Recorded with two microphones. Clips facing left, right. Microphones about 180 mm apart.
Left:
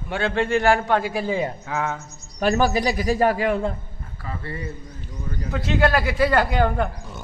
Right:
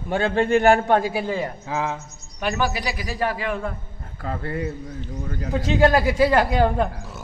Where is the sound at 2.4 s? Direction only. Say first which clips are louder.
Left 5 dB; 40° left (ahead or behind).